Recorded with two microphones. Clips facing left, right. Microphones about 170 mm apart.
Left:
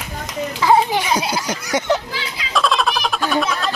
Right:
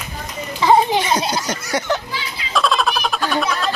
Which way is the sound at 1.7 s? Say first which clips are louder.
Left 3 dB; 20° left (ahead or behind).